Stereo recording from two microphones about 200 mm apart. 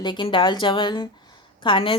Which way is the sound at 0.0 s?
25° left (ahead or behind).